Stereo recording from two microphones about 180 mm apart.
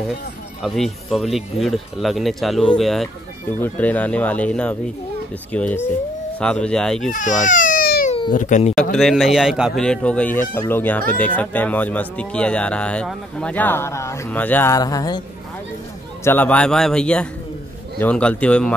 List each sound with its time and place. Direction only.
0.6 s speech: centre (ahead or behind)
7.1 s speech: 45° left (ahead or behind)
8.9 s speech: centre (ahead or behind); by 15.2 s 20° left (ahead or behind)
16.3 s speech: 10° left (ahead or behind)